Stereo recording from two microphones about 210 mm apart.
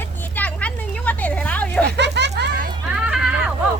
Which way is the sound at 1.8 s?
55° right (ahead or behind).